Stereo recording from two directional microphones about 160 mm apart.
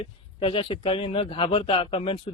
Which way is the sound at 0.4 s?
35° left (ahead or behind).